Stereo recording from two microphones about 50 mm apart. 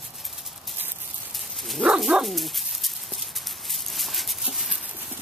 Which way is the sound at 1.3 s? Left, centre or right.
Centre.